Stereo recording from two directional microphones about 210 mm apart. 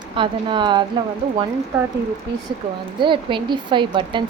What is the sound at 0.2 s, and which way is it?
Speech, 25° right (ahead or behind).